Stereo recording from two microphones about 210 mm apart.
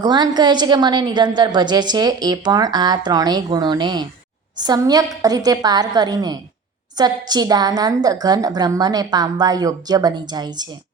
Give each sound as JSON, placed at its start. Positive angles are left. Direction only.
{"t": 0.0, "sound": "a woman's voice", "side_deg": -20}